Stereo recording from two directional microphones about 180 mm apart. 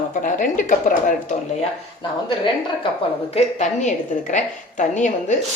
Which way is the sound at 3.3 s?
40° left (ahead or behind).